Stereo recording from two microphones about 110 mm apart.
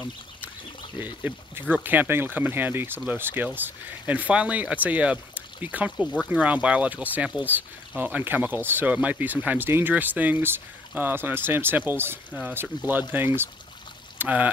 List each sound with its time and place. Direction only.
0.9 s speech: 15° right (ahead or behind)